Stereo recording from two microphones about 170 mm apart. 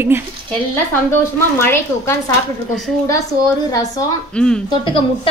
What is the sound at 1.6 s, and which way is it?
Speech, 15° left (ahead or behind).